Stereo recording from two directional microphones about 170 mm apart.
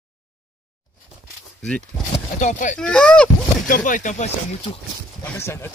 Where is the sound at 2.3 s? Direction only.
45° left (ahead or behind).